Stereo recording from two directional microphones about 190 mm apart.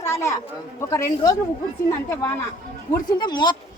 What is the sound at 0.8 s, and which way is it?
Speech, 15° left (ahead or behind).